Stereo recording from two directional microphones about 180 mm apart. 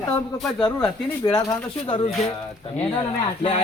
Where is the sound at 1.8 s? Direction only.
30° left (ahead or behind).